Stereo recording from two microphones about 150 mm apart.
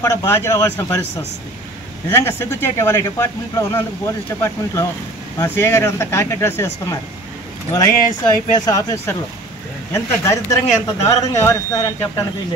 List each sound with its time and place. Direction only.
0.0 s speech: 25° left (ahead or behind)
9.9 s speech: 20° left (ahead or behind)